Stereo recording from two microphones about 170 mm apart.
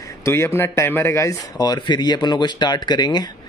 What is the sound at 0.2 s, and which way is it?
Speech, 15° left (ahead or behind).